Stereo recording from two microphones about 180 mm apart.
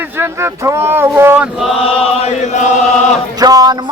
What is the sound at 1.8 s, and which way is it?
Chant, 30° left (ahead or behind).